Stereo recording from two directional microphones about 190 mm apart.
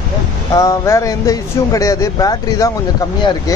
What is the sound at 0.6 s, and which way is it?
A man's voice, 15° left (ahead or behind).